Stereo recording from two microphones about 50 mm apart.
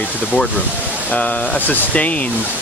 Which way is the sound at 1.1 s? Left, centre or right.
Left.